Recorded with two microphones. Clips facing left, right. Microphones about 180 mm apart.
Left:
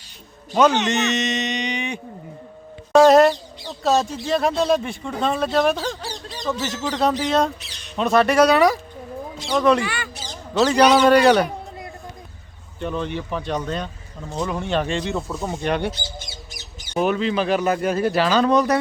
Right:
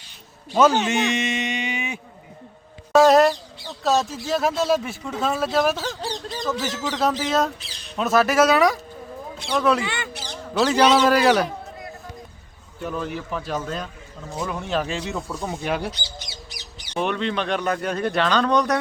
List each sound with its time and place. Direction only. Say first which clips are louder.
0.5 s a man's voice: left 1 dB; 5° right (ahead or behind)
9.8 s speech: left 1 dB; 20° right (ahead or behind)
10.6 s speech: left 2 dB; centre (ahead or behind)
12.8 s speech: left 2 dB; 5° right (ahead or behind)
16.1 s bird: left 1 dB; 50° left (ahead or behind)
16.9 s speech: left 4 dB; 5° left (ahead or behind)